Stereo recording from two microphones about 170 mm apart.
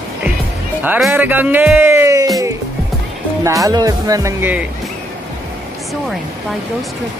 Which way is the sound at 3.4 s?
20° right (ahead or behind).